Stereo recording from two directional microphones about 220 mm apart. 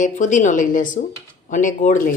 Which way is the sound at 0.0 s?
35° left (ahead or behind).